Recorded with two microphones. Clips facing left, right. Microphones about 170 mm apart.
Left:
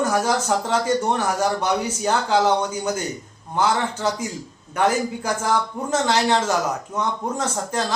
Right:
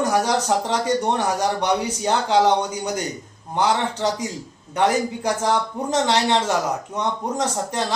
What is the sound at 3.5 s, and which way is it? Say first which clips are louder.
Speech: right 1 dB; 15° right (ahead or behind).